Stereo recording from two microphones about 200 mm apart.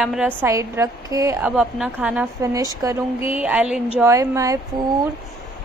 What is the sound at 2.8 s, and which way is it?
Speech, 15° right (ahead or behind).